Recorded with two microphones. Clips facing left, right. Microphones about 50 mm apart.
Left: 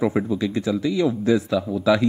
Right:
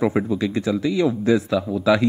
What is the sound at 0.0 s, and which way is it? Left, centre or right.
Speech, right.